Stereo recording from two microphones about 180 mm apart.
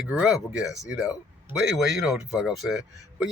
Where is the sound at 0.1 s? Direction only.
5° right (ahead or behind).